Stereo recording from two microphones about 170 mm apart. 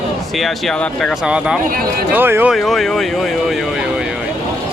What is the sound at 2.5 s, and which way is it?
Speech, centre (ahead or behind).